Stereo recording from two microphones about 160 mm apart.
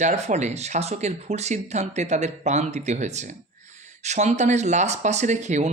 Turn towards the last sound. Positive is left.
turn(degrees=-45)  # may be behind; listen again after turning